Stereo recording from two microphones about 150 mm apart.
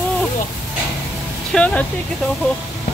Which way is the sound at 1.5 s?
10° left (ahead or behind).